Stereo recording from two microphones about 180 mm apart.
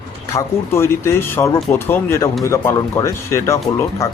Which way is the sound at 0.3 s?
15° left (ahead or behind).